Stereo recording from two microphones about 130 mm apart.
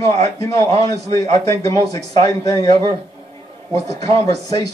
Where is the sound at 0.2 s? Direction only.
25° left (ahead or behind).